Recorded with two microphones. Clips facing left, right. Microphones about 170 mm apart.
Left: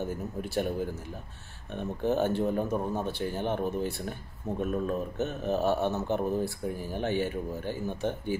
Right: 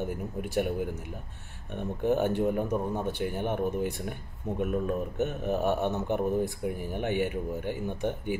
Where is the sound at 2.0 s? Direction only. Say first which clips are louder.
Right 1 dB; 15° right (ahead or behind).